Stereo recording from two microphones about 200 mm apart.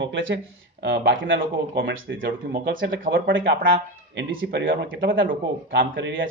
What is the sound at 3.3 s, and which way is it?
Speech, 70° right (ahead or behind).